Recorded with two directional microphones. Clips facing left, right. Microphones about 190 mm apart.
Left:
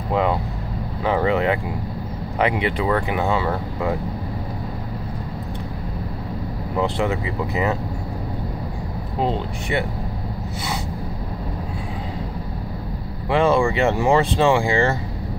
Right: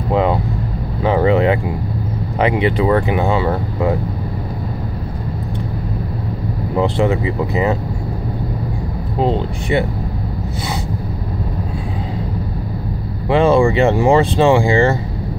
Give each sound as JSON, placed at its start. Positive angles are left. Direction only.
{"t": 1.0, "sound": "vehicle", "side_deg": -30}
{"t": 2.3, "sound": "speech", "side_deg": -30}
{"t": 6.8, "sound": "speech", "side_deg": -30}
{"t": 9.2, "sound": "speech", "side_deg": -30}
{"t": 13.3, "sound": "speech", "side_deg": -30}